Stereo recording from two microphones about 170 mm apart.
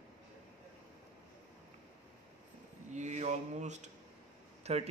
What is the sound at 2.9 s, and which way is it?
Mantra, 45° right (ahead or behind).